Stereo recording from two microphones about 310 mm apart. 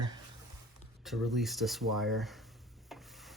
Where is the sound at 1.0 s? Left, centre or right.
Centre.